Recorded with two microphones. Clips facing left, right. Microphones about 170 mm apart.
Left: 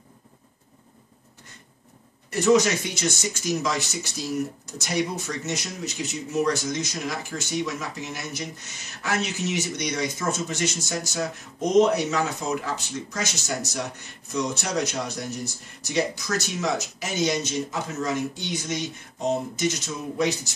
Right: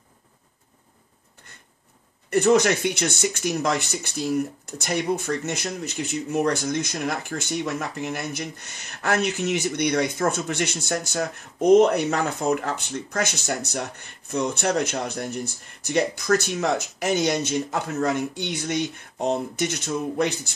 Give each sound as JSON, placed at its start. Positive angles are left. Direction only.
{"t": 2.3, "sound": "speech", "side_deg": -55}